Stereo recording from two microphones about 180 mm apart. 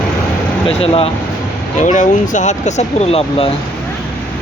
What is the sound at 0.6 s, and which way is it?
Speech, 30° left (ahead or behind).